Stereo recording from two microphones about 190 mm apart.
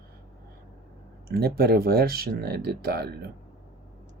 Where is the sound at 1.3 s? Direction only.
55° right (ahead or behind).